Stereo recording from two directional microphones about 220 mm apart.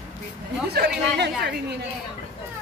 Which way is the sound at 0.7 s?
50° right (ahead or behind).